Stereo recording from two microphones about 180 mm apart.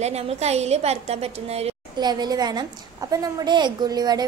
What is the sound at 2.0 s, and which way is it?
A woman's voice, 25° right (ahead or behind).